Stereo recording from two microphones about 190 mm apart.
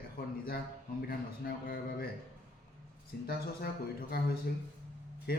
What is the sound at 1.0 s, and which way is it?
A man's voice, 50° left (ahead or behind).